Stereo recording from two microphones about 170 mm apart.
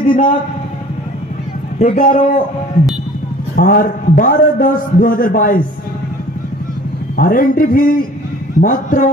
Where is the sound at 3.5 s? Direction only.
55° left (ahead or behind).